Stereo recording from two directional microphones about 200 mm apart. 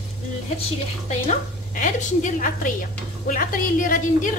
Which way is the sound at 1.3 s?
40° left (ahead or behind).